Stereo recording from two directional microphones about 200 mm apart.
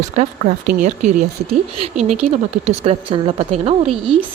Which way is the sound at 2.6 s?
30° right (ahead or behind).